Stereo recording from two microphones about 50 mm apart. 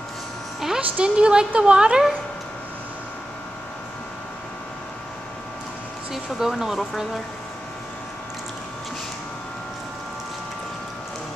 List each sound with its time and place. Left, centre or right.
0.7 s a woman's voice: right
6.1 s speech: centre